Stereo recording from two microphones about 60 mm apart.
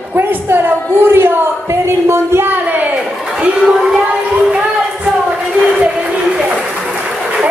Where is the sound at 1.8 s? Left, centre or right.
Right.